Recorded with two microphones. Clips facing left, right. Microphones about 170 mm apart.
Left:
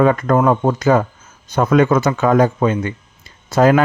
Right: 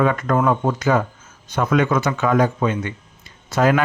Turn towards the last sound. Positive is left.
turn(degrees=40)  # may be behind; listen again after turning